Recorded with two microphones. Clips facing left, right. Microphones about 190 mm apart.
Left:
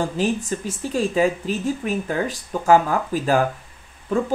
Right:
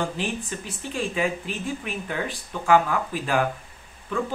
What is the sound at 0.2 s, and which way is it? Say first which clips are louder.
Speech: left 7 dB; 40° left (ahead or behind).